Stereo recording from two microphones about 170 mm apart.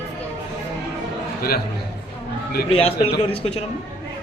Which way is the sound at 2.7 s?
35° left (ahead or behind).